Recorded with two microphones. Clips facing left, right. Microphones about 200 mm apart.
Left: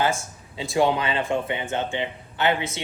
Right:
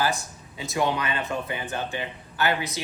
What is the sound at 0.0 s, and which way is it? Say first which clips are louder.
Speech: left 2 dB; 25° left (ahead or behind).